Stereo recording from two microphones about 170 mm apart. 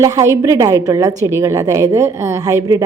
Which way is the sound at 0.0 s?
20° right (ahead or behind).